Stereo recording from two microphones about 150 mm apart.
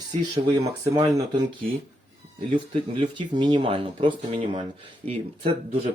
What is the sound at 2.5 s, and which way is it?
Speech, 35° right (ahead or behind).